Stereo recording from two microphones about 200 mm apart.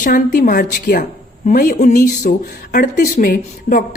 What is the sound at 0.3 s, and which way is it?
A woman's voice, 40° left (ahead or behind).